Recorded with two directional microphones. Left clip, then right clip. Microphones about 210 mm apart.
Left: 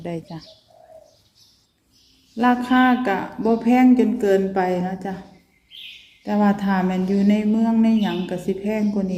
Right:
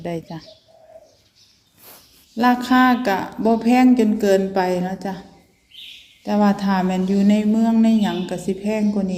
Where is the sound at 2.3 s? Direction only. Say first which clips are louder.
Right 2 dB; centre (ahead or behind).